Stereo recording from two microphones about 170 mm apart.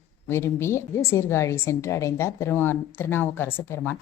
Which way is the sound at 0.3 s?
15° left (ahead or behind).